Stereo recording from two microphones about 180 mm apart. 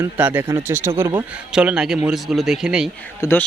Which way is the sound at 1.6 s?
5° right (ahead or behind).